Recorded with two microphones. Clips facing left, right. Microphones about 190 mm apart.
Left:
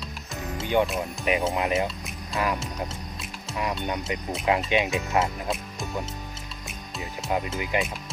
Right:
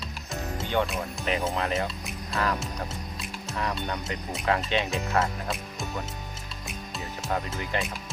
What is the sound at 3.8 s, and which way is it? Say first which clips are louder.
Speech: left 3 dB; 15° left (ahead or behind).